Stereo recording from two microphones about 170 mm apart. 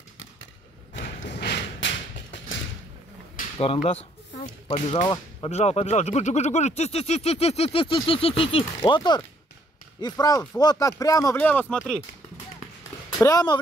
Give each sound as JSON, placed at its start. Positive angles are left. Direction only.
{"t": 1.3, "sound": "a sound", "side_deg": 80}
{"t": 3.5, "sound": "speech", "side_deg": 30}
{"t": 5.0, "sound": "speech", "side_deg": 25}
{"t": 5.5, "sound": "speech", "side_deg": 40}
{"t": 11.4, "sound": "speech", "side_deg": 5}
{"t": 13.2, "sound": "speech", "side_deg": 20}